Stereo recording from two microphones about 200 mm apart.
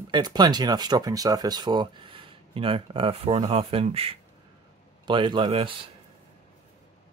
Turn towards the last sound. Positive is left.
turn(degrees=-25)  # may be behind; listen again after turning